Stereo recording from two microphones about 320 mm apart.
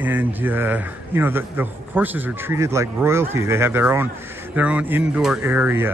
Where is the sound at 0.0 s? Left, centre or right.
Centre.